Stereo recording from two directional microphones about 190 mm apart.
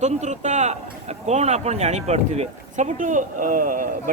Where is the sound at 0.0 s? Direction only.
40° right (ahead or behind).